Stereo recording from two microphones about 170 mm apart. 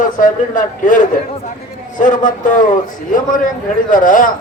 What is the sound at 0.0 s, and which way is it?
A man's voice, 50° left (ahead or behind).